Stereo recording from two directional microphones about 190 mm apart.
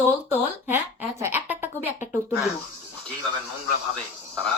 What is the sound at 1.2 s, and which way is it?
Speech, 10° right (ahead or behind).